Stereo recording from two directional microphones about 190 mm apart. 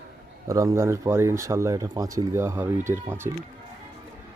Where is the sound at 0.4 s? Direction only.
15° right (ahead or behind).